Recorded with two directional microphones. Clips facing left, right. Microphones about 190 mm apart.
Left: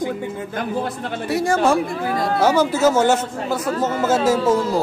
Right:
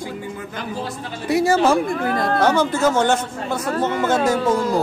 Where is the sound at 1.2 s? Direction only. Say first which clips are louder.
Right 2 dB; 10° right (ahead or behind).